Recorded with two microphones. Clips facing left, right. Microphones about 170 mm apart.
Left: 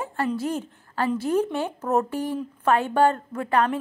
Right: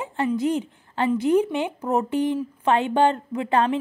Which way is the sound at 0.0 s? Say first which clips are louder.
Right 1 dB; 15° right (ahead or behind).